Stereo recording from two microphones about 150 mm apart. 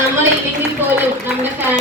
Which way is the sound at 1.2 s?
15° right (ahead or behind).